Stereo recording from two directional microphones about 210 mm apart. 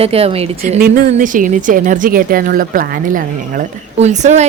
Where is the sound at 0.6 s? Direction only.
40° right (ahead or behind).